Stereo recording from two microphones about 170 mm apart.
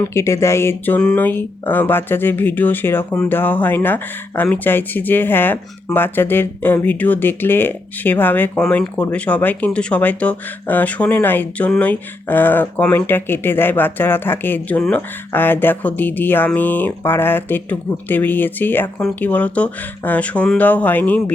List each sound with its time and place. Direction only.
0.1 s speech: 15° left (ahead or behind)